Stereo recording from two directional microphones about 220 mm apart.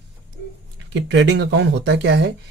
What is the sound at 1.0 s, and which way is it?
Speech, 55° right (ahead or behind).